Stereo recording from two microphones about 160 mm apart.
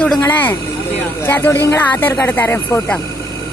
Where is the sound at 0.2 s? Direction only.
15° left (ahead or behind).